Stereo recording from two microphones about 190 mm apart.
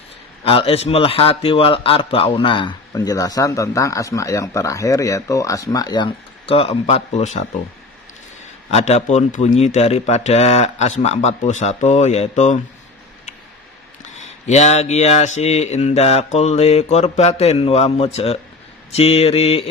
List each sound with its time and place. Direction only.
0.4 s a man's voice: 30° left (ahead or behind)
8.7 s mantra: 35° left (ahead or behind)
14.4 s mantra: 35° left (ahead or behind)